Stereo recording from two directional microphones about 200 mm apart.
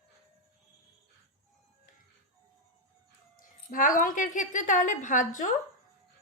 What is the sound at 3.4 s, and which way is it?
A woman's voice, 40° left (ahead or behind).